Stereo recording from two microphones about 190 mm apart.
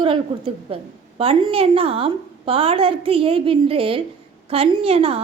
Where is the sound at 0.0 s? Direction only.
30° right (ahead or behind).